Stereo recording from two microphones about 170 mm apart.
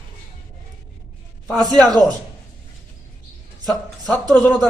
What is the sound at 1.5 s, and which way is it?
Speech, 5° left (ahead or behind).